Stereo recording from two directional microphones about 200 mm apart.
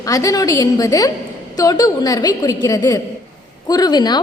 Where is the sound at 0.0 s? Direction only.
15° left (ahead or behind).